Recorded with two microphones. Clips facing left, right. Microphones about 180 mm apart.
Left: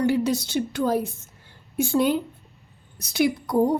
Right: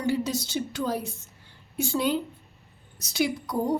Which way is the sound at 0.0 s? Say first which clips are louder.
Left 5 dB; 60° left (ahead or behind).